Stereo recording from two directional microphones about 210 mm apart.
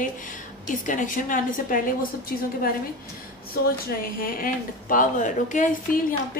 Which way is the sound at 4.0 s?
45° left (ahead or behind).